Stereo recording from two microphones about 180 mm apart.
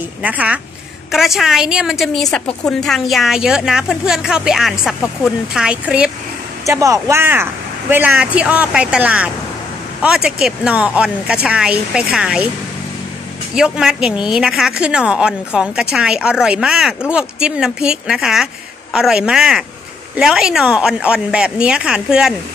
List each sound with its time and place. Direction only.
0.2 s a woman's voice: 5° right (ahead or behind)
6.6 s a woman's voice: 15° right (ahead or behind)
13.6 s a woman's voice: 5° right (ahead or behind)